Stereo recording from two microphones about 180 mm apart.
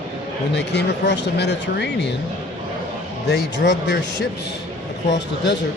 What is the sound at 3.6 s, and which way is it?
Speech, 75° left (ahead or behind).